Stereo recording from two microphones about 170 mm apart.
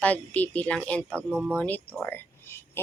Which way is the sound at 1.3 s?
5° right (ahead or behind).